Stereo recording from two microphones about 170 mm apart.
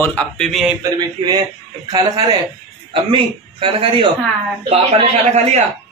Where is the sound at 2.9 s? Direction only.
30° right (ahead or behind).